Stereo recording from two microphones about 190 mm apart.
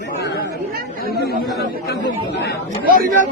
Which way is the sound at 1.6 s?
60° left (ahead or behind).